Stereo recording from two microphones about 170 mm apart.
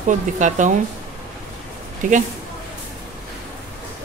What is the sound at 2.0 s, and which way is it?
Speech, 50° right (ahead or behind).